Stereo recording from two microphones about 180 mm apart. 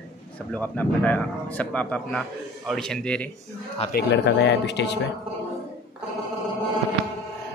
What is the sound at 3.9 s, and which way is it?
Speech, 70° left (ahead or behind).